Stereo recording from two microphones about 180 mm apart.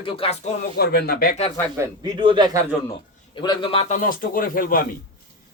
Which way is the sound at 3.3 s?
25° left (ahead or behind).